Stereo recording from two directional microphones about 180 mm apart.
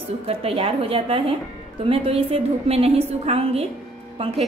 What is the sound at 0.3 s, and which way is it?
A woman's voice, 30° right (ahead or behind).